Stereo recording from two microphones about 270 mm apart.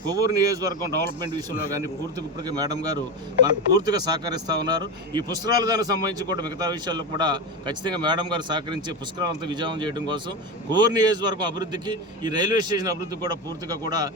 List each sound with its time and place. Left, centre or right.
0.1 s speech: centre